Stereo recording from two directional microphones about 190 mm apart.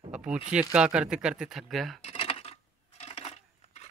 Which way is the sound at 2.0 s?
30° left (ahead or behind).